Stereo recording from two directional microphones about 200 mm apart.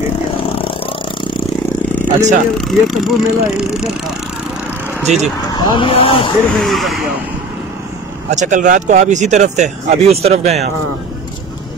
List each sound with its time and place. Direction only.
0.6 s a sound: 25° left (ahead or behind)
2.0 s speech: 40° right (ahead or behind)
2.5 s speech: centre (ahead or behind)
5.1 s speech: 35° right (ahead or behind)
5.5 s speech: 25° left (ahead or behind)
6.5 s speech: centre (ahead or behind)
8.3 s speech: 40° right (ahead or behind)